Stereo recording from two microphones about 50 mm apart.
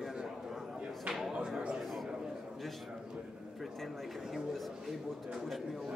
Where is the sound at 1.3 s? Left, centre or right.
Centre.